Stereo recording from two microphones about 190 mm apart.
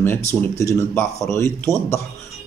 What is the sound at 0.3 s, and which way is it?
Speech, 15° left (ahead or behind).